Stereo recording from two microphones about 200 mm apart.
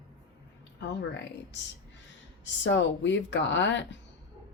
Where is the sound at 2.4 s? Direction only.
65° left (ahead or behind).